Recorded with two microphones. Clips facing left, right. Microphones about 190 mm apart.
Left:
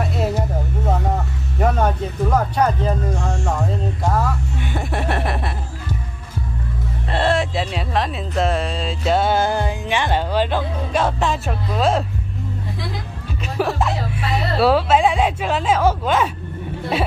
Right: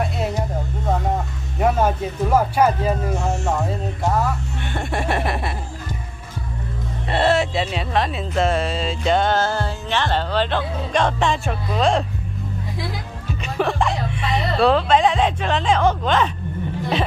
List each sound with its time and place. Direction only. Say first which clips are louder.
1.6 s speech: right 1 dB; 5° right (ahead or behind)
4.1 s speech: right 1 dB; 5° left (ahead or behind)
7.1 s speech: right 1 dB; 5° right (ahead or behind)
13.6 s speech: even; 5° left (ahead or behind)